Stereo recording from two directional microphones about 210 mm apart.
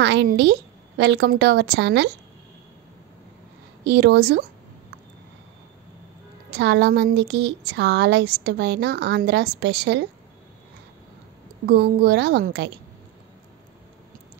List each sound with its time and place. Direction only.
0.0 s a woman's voice: 55° right (ahead or behind)
3.8 s speech: 50° right (ahead or behind)
6.5 s speech: 55° right (ahead or behind)
11.6 s speech: 50° right (ahead or behind)